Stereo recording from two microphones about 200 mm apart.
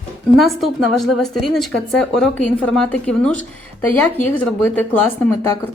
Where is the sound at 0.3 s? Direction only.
Centre (ahead or behind).